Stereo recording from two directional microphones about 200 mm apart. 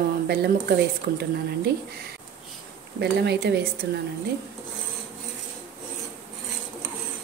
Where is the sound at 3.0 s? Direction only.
55° right (ahead or behind).